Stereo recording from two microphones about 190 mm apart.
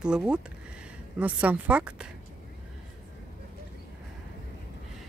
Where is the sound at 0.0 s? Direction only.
5° right (ahead or behind).